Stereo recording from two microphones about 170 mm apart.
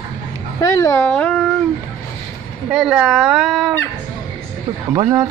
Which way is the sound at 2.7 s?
5° right (ahead or behind).